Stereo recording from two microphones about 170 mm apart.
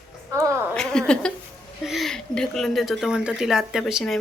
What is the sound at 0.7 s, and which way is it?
Speech, 5° left (ahead or behind).